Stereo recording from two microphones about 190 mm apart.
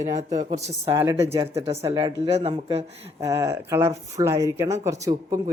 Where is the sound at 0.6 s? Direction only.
15° right (ahead or behind).